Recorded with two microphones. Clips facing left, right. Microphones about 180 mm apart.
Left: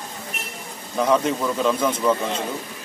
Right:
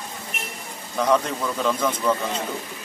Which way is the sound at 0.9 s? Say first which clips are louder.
Left 2 dB; 5° left (ahead or behind).